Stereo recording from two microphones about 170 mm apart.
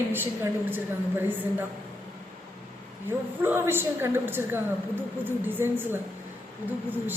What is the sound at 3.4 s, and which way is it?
A woman's voice, 15° right (ahead or behind).